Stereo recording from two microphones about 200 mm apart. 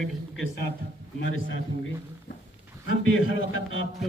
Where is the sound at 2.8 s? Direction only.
85° left.